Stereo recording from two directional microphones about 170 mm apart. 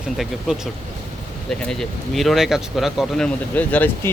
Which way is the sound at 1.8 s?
Centre (ahead or behind).